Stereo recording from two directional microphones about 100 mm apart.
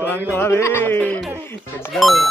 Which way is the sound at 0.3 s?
25° left (ahead or behind).